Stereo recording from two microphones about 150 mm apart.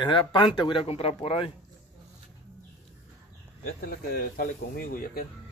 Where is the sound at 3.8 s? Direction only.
75° left (ahead or behind).